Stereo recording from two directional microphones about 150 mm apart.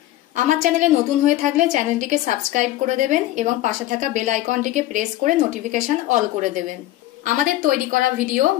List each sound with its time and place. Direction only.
0.5 s a woman's voice: 55° right (ahead or behind)